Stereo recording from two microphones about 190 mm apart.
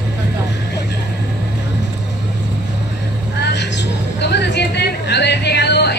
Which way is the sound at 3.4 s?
65° left (ahead or behind).